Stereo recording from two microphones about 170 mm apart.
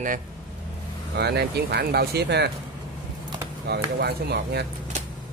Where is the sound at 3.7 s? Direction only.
70° right (ahead or behind).